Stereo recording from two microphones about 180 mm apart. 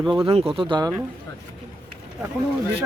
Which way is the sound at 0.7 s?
20° right (ahead or behind).